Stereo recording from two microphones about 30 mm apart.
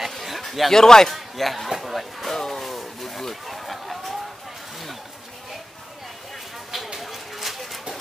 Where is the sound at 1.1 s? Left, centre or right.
Centre.